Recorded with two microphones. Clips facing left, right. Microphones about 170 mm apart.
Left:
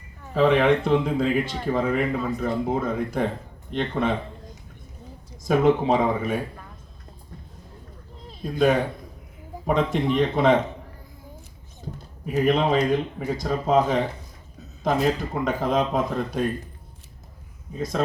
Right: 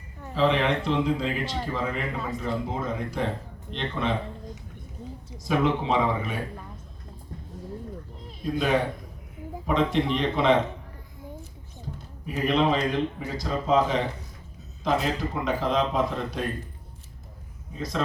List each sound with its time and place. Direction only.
0.3 s speech: 50° left (ahead or behind)
5.4 s speech: 45° left (ahead or behind)
8.5 s speech: 45° left (ahead or behind)
12.2 s speech: 45° left (ahead or behind)
17.7 s speech: 50° left (ahead or behind)